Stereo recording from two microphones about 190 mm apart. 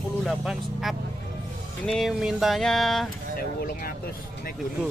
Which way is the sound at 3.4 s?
50° left (ahead or behind).